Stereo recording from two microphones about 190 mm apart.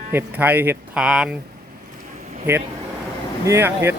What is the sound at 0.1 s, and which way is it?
Speech, 10° right (ahead or behind).